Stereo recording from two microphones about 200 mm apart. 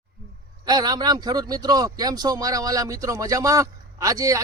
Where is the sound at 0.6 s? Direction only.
20° right (ahead or behind).